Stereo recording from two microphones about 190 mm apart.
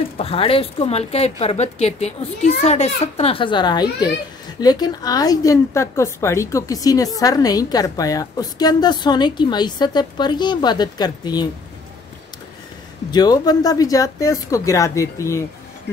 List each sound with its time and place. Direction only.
0.2 s a woman's voice: 30° left (ahead or behind)
13.1 s a woman's voice: 20° left (ahead or behind)